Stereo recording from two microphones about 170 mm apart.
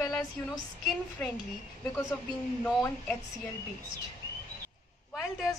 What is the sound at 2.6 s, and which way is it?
Speech, 10° left (ahead or behind).